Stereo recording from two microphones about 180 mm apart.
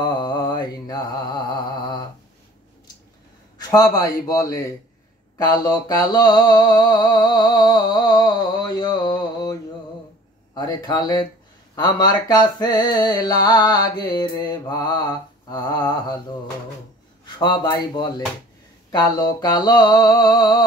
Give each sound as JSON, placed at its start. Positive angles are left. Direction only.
{"t": 0.0, "sound": "mantra", "side_deg": 25}
{"t": 3.5, "sound": "mantra", "side_deg": 20}
{"t": 10.5, "sound": "a man's voice", "side_deg": 20}
{"t": 11.7, "sound": "mantra", "side_deg": 20}
{"t": 17.4, "sound": "mantra", "side_deg": 25}